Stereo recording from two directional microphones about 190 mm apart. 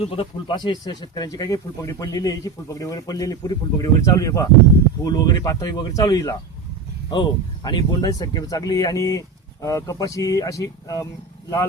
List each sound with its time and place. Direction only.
0.0 s speech: 30° left (ahead or behind)